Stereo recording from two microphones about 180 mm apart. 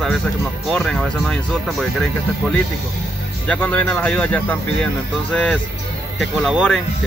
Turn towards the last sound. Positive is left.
turn(degrees=0)  # may be behind; listen again after turning